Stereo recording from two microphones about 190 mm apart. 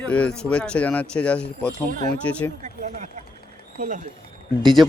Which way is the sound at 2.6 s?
40° right (ahead or behind).